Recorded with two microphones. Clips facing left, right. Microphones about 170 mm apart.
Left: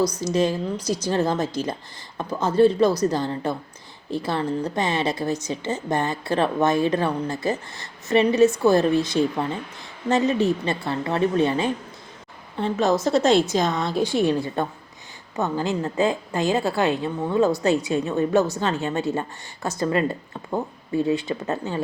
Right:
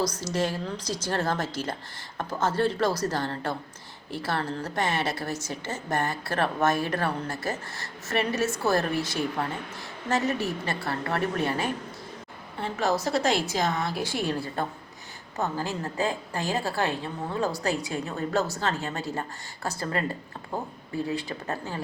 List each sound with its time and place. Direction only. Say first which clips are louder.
0.0 s a woman's voice: left 6 dB; 10° left (ahead or behind)